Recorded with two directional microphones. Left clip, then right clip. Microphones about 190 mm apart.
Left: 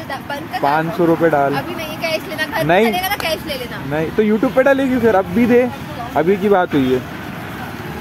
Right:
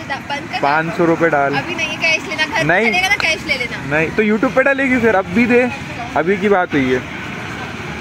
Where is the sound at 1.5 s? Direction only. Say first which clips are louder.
Right 3 dB; 15° left (ahead or behind); by 6.7 s 5° right (ahead or behind).